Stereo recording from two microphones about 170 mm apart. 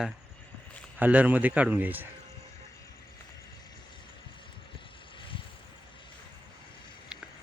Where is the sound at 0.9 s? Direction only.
10° right (ahead or behind).